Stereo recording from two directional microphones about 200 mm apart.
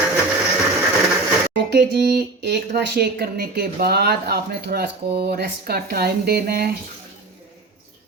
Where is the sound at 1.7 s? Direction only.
55° right (ahead or behind).